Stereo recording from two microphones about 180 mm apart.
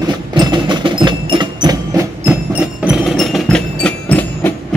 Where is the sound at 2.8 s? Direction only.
Centre (ahead or behind).